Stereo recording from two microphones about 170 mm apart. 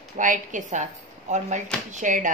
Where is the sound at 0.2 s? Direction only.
50° right (ahead or behind).